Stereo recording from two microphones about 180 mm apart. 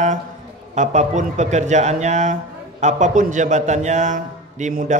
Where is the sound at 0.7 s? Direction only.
40° right (ahead or behind).